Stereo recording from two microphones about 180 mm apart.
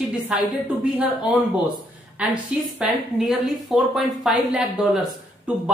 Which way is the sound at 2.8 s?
Centre (ahead or behind).